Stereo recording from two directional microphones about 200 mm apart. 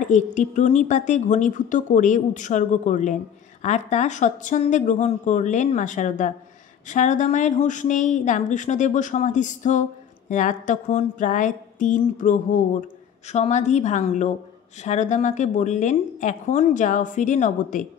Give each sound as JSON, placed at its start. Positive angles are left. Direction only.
{"t": 0.0, "sound": "a woman's voice", "side_deg": 35}